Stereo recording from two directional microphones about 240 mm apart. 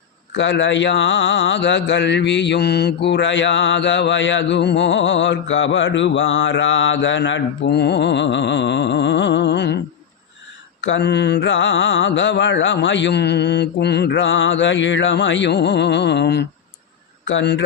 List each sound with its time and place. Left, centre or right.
0.3 s speech: left